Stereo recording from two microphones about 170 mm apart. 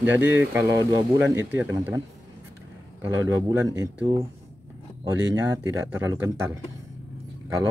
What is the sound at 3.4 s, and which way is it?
Speech, 20° right (ahead or behind).